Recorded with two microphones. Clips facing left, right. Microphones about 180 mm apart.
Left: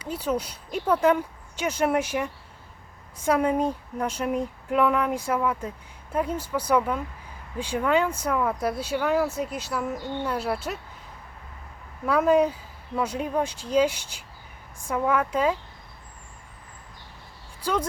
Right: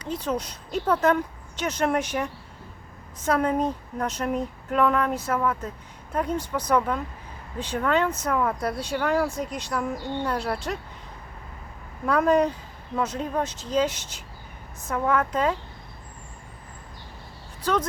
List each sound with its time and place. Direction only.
0.0 s speech: 10° left (ahead or behind)
12.0 s speech: 5° left (ahead or behind)
17.6 s speech: 10° left (ahead or behind)